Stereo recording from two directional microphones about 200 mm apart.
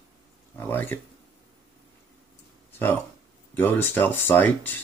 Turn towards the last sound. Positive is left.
turn(degrees=10)  # may be behind; listen again after turning